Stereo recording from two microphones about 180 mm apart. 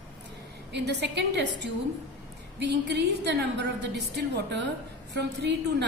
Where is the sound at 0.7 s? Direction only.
70° right (ahead or behind).